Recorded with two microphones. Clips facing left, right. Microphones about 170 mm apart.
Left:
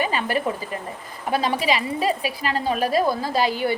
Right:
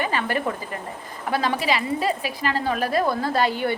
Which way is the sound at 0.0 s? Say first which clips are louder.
Left 1 dB; 15° left (ahead or behind).